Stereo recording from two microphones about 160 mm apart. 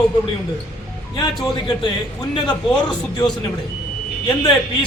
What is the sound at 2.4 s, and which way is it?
Speech, 25° left (ahead or behind).